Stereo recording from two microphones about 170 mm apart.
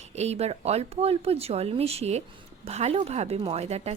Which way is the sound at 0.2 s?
40° right (ahead or behind).